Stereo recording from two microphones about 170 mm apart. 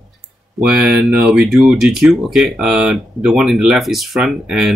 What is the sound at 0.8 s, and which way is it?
Speech, 5° right (ahead or behind).